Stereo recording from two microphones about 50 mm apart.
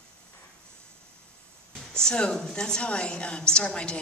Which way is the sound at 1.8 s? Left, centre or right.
Centre.